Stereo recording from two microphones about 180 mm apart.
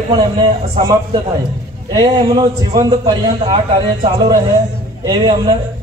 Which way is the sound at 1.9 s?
20° right (ahead or behind).